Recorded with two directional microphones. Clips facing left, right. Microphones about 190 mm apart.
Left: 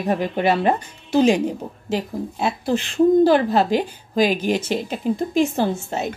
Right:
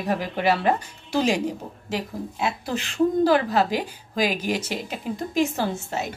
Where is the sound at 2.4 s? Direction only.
30° left (ahead or behind).